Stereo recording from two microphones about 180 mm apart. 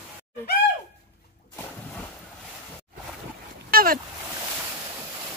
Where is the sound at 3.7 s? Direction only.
50° right (ahead or behind).